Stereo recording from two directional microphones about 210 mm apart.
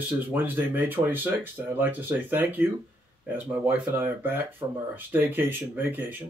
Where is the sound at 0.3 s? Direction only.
10° right (ahead or behind).